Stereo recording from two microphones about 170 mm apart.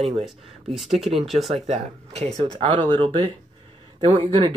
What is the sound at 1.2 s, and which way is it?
Speech, centre (ahead or behind).